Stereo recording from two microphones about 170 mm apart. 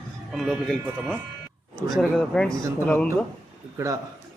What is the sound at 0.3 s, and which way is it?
A man's voice, centre (ahead or behind).